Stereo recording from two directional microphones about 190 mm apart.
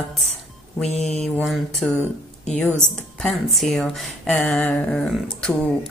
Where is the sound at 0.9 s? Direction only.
35° left (ahead or behind).